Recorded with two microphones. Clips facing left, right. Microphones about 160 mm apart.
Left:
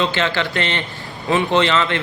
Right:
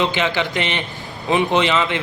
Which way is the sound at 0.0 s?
15° right (ahead or behind).